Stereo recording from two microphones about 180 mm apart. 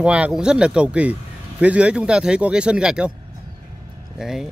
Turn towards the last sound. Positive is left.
turn(degrees=0)  # may be behind; listen again after turning